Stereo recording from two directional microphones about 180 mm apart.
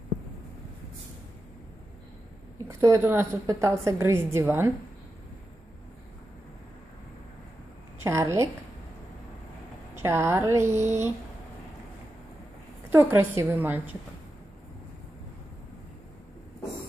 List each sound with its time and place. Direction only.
2.7 s a woman's voice: 15° right (ahead or behind)
8.0 s a woman's voice: 15° right (ahead or behind)
9.9 s a woman's voice: 15° right (ahead or behind)
12.9 s a woman's voice: 10° right (ahead or behind)